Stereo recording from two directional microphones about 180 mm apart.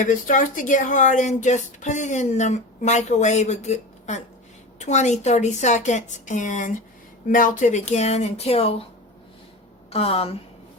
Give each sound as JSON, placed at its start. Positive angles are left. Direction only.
{"t": 0.0, "sound": "speech", "side_deg": 45}
{"t": 9.9, "sound": "speech", "side_deg": 35}